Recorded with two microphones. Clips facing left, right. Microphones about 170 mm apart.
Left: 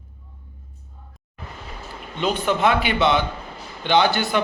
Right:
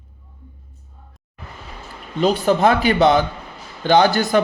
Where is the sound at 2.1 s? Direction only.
35° right (ahead or behind).